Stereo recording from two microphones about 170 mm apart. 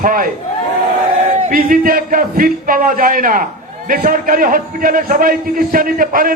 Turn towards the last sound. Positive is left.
turn(degrees=-55)  # may be behind; listen again after turning